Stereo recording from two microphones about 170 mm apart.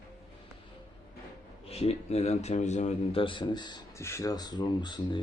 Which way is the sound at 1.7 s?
40° left (ahead or behind).